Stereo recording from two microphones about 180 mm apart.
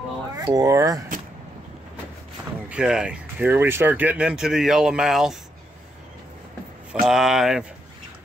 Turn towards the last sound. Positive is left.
turn(degrees=-5)  # may be behind; listen again after turning